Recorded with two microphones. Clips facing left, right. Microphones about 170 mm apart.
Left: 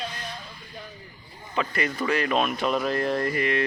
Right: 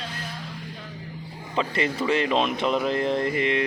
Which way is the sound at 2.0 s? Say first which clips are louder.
Right 1 dB; 25° right (ahead or behind).